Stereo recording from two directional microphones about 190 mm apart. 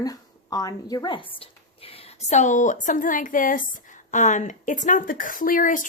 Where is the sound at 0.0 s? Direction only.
20° left (ahead or behind).